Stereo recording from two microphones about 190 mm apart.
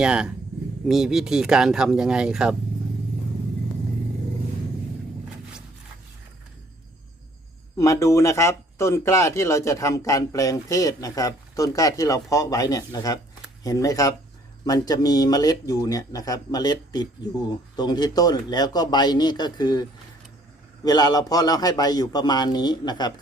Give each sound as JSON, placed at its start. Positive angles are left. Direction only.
{"t": 0.0, "sound": "speech", "side_deg": -5}
{"t": 7.8, "sound": "speech", "side_deg": 15}